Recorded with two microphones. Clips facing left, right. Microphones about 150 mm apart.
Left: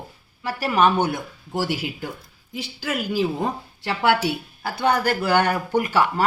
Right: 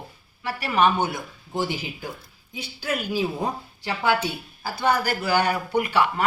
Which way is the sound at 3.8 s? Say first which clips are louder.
Left 3 dB; 80° left.